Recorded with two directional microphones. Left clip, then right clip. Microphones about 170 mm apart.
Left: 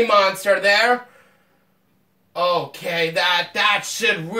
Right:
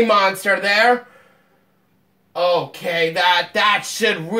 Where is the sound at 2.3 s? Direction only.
30° right (ahead or behind).